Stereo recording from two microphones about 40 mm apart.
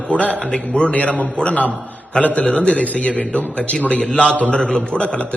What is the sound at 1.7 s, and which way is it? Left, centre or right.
Speech, right.